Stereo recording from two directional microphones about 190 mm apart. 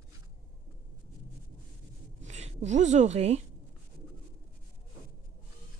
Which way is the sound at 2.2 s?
35° right (ahead or behind).